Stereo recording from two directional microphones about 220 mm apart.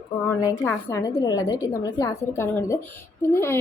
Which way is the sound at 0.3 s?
15° left (ahead or behind).